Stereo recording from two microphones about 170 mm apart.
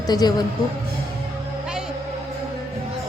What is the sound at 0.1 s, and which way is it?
Speech, 25° left (ahead or behind).